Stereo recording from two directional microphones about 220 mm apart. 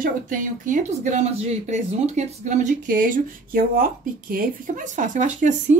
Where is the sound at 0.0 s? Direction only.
35° right (ahead or behind).